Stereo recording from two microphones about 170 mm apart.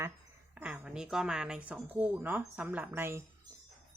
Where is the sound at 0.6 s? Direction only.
5° right (ahead or behind).